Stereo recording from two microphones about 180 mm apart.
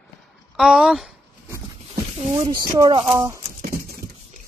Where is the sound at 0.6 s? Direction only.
5° right (ahead or behind).